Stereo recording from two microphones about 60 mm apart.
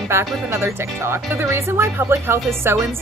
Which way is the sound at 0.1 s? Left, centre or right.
Right.